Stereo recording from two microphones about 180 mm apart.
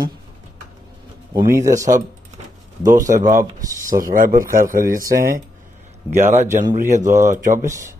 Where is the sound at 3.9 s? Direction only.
50° right (ahead or behind).